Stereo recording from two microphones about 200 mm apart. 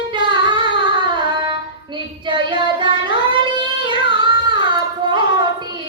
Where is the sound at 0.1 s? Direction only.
25° right (ahead or behind).